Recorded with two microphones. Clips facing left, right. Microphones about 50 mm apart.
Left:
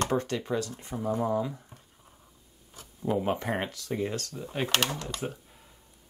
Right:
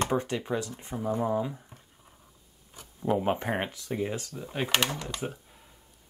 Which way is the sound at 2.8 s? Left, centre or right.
Centre.